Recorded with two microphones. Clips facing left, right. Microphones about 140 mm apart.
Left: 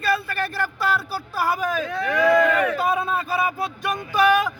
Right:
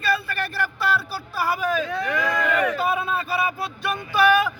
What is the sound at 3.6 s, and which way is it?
Speech, 45° left (ahead or behind).